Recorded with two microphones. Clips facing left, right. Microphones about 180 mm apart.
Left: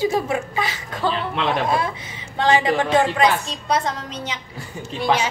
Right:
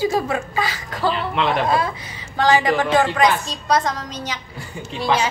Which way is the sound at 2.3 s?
25° left (ahead or behind).